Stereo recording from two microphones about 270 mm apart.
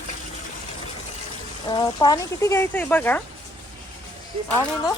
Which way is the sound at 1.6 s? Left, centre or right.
Centre.